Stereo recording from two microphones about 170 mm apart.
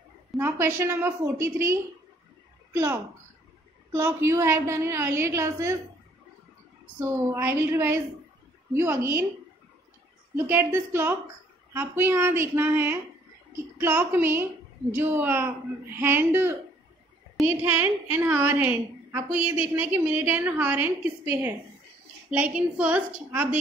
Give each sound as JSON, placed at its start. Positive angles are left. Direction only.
{"t": 0.4, "sound": "a woman's voice", "side_deg": -15}
{"t": 3.9, "sound": "a woman's voice", "side_deg": -15}
{"t": 7.0, "sound": "a woman's voice", "side_deg": -15}
{"t": 10.3, "sound": "a woman's voice", "side_deg": -15}
{"t": 17.6, "sound": "a woman's voice", "side_deg": -10}